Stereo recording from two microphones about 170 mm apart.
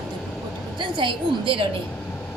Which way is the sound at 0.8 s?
30° right (ahead or behind).